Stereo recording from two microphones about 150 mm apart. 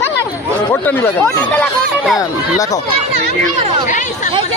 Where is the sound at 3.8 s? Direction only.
60° left (ahead or behind).